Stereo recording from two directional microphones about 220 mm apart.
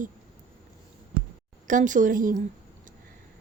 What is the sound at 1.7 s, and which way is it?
Speech, 35° right (ahead or behind).